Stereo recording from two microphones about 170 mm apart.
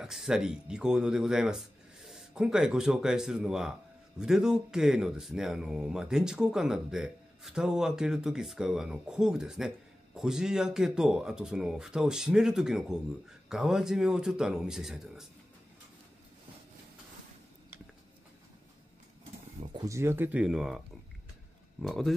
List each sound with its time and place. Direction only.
0.0 s speech: 5° right (ahead or behind)
19.7 s speech: 20° right (ahead or behind); by 20.8 s 5° right (ahead or behind)
21.8 s speech: centre (ahead or behind)